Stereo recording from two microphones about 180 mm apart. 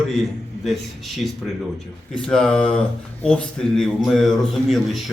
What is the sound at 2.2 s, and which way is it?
A man's voice, 5° left (ahead or behind).